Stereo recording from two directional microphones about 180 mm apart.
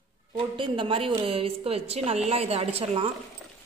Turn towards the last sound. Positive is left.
turn(degrees=-35)  # may be behind; listen again after turning